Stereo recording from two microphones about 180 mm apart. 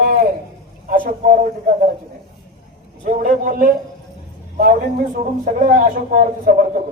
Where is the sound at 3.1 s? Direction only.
50° right (ahead or behind).